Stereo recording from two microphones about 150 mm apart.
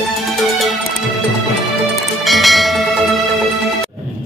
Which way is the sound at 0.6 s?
Centre (ahead or behind).